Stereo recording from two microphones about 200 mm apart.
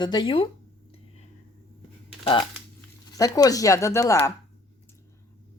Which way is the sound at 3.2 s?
15° left (ahead or behind).